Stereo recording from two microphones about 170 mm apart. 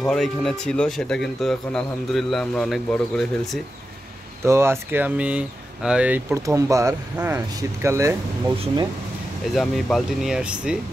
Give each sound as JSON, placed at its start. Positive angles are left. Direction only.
{"t": 0.0, "sound": "speech", "side_deg": 0}
{"t": 4.5, "sound": "speech", "side_deg": -15}
{"t": 9.6, "sound": "speech", "side_deg": 0}